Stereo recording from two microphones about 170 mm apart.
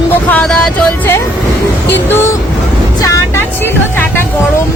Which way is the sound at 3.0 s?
15° left (ahead or behind).